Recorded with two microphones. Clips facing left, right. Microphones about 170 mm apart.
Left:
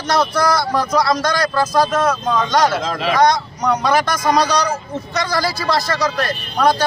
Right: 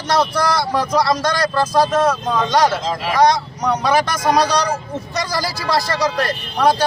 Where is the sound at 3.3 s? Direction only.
5° right (ahead or behind).